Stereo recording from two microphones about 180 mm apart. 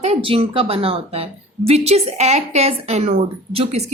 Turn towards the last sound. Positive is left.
turn(degrees=-35)  # may be behind; listen again after turning